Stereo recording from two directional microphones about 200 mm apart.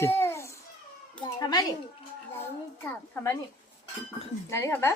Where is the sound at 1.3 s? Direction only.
20° left (ahead or behind).